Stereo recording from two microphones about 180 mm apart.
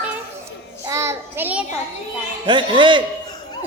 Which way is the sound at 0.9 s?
15° right (ahead or behind).